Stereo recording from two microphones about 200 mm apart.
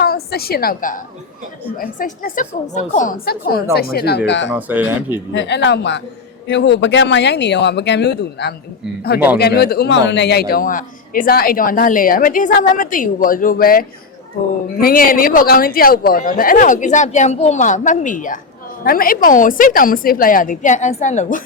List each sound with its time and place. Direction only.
0.0 s a woman's voice: 50° left (ahead or behind)
4.5 s speech: 10° right (ahead or behind)
5.3 s a man's voice: 60° left (ahead or behind); by 21.4 s 40° left (ahead or behind)